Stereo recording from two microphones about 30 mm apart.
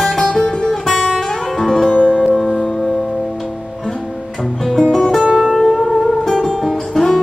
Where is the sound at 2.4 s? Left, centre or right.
Centre.